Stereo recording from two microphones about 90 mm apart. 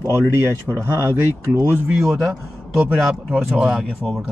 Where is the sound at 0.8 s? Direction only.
30° right (ahead or behind).